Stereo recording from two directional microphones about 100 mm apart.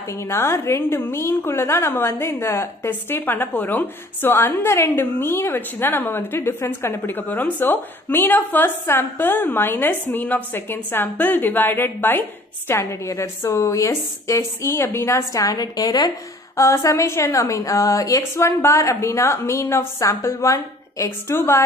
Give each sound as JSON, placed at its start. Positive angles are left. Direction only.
{"t": 0.1, "sound": "a woman's voice", "side_deg": 25}